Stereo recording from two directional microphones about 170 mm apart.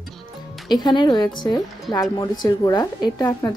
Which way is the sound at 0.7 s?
25° left (ahead or behind).